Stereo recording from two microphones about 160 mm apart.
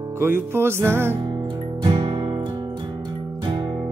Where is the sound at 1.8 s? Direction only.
30° right (ahead or behind).